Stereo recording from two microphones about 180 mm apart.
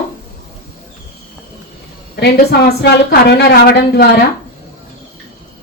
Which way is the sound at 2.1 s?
65° left (ahead or behind).